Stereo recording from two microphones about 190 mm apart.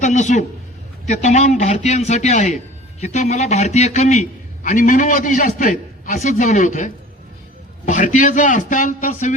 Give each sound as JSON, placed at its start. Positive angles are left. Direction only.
{"t": 0.0, "sound": "a man's voice", "side_deg": 40}